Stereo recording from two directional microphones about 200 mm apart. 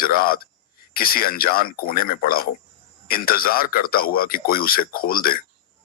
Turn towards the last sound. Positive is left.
turn(degrees=45)  # may be behind; listen again after turning